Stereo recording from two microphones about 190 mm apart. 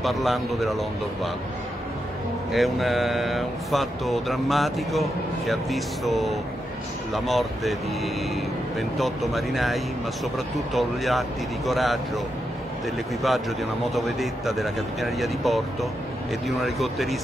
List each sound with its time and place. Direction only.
0.0 s a man's voice: centre (ahead or behind)
2.5 s a man's voice: centre (ahead or behind)
13.2 s a man's voice: centre (ahead or behind)